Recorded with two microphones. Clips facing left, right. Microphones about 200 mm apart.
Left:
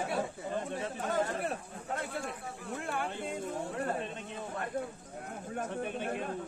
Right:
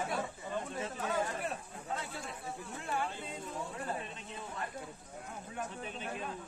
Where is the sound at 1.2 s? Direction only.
55° left (ahead or behind).